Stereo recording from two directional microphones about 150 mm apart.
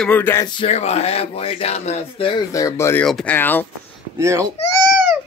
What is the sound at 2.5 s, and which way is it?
Speech, 20° left (ahead or behind).